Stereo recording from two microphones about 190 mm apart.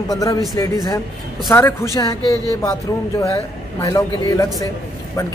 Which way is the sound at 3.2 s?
15° left (ahead or behind).